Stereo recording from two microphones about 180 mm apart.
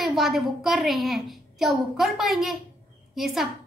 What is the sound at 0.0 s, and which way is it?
Speech, centre (ahead or behind).